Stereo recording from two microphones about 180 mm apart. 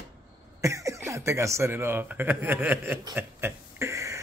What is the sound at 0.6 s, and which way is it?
Speech, 15° right (ahead or behind).